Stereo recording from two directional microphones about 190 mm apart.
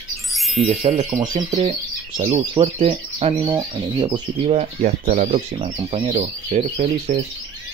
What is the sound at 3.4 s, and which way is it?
Speech, 15° right (ahead or behind).